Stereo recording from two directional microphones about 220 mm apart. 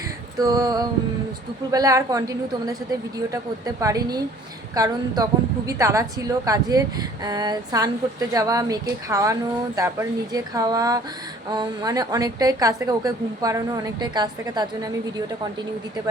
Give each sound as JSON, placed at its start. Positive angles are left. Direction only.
{"t": 0.3, "sound": "a woman's voice", "side_deg": -15}